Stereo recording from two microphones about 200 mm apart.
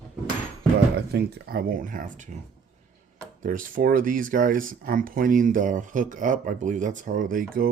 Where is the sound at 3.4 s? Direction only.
40° right (ahead or behind).